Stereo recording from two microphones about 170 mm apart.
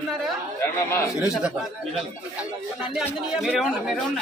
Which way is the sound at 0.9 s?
15° left (ahead or behind).